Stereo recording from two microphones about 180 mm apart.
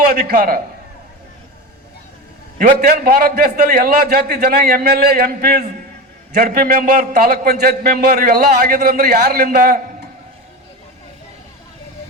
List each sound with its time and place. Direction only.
0.3 s a man's voice: 50° right (ahead or behind)
2.6 s a man's voice: 50° right (ahead or behind)